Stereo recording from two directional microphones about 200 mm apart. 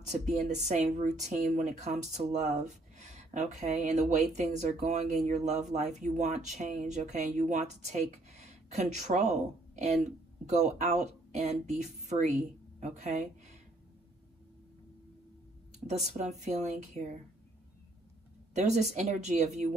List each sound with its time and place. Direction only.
0.1 s speech: 35° right (ahead or behind)
16.2 s speech: 35° right (ahead or behind)
18.5 s speech: 35° right (ahead or behind)